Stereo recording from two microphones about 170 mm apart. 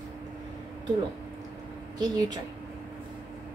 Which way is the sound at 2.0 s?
20° right (ahead or behind).